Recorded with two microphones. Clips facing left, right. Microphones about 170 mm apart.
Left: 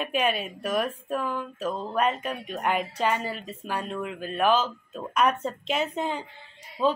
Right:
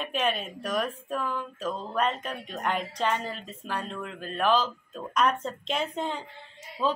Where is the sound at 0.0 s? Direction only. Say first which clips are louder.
Left 2 dB; 5° left (ahead or behind).